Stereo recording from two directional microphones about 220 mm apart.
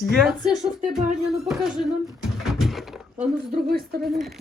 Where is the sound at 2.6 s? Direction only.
Centre (ahead or behind).